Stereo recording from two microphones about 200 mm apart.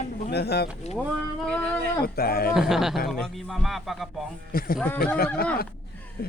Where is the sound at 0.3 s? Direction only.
55° left (ahead or behind).